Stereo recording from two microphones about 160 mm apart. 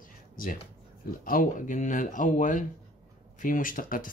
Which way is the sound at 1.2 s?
60° left (ahead or behind).